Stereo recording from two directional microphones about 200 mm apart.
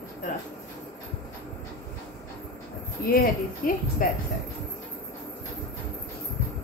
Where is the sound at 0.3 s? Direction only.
40° left (ahead or behind).